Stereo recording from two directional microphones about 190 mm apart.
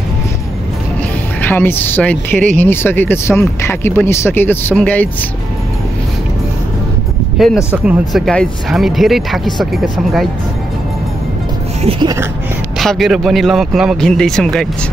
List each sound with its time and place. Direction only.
1.4 s speech: 10° left (ahead or behind)
7.3 s speech: centre (ahead or behind)
11.8 s a sound: 25° right (ahead or behind)
12.7 s speech: centre (ahead or behind)